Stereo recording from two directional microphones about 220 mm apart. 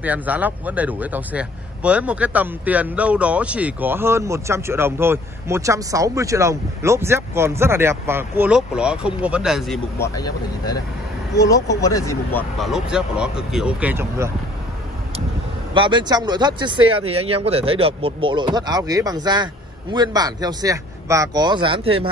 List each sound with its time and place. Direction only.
0.0 s speech: 5° right (ahead or behind)
9.9 s speech: 15° left (ahead or behind); by 14.3 s 10° right (ahead or behind)
15.7 s speech: 20° right (ahead or behind)